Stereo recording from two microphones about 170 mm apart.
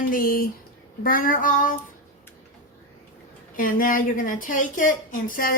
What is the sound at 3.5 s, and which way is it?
A woman's voice, 55° left (ahead or behind).